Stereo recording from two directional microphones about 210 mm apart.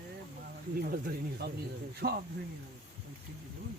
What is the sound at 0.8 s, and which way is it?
Speech, 45° right (ahead or behind).